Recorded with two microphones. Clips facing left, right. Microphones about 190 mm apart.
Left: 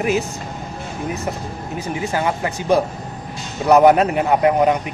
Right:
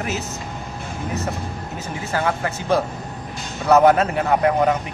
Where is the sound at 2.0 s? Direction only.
15° left (ahead or behind).